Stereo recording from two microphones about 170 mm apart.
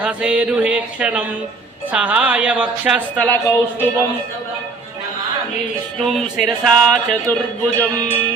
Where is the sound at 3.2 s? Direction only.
15° left (ahead or behind).